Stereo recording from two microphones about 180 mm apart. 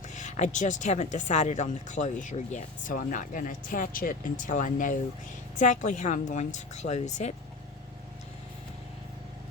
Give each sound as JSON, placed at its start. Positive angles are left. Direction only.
{"t": 0.1, "sound": "speech", "side_deg": 40}